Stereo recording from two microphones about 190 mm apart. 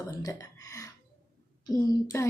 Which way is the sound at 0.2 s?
20° left (ahead or behind).